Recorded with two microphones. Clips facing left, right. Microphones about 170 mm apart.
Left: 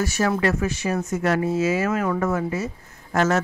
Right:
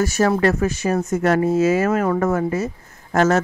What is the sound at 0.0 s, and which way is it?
Speech, 45° right (ahead or behind).